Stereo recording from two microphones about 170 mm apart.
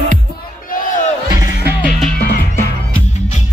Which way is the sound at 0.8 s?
50° left (ahead or behind).